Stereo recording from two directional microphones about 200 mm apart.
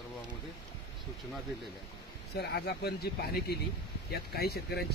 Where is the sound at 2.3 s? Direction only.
55° left (ahead or behind).